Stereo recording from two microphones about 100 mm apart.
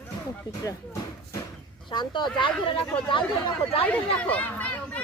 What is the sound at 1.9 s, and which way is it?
Speech, 50° left (ahead or behind).